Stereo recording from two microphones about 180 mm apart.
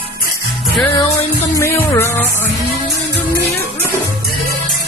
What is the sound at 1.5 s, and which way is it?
Music, 15° left (ahead or behind).